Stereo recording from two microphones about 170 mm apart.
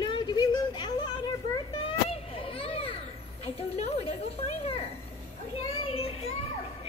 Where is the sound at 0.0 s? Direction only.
25° left (ahead or behind).